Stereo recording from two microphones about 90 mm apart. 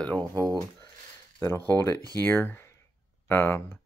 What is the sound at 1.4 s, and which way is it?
Speech, 30° left (ahead or behind).